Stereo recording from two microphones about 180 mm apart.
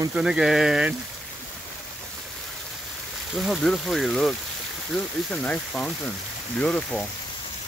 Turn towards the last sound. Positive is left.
turn(degrees=5)  # may be behind; listen again after turning